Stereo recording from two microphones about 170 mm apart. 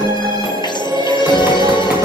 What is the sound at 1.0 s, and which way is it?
Music, 25° left (ahead or behind).